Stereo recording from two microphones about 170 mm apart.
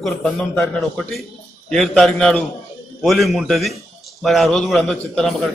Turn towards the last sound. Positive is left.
turn(degrees=0)  # may be behind; listen again after turning